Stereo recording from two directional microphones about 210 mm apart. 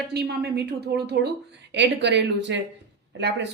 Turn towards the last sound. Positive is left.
turn(degrees=-55)  # may be behind; listen again after turning